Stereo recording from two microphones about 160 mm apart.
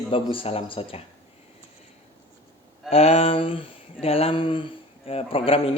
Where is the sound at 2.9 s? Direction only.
40° left (ahead or behind).